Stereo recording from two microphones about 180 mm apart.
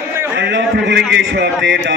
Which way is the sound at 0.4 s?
75° right (ahead or behind).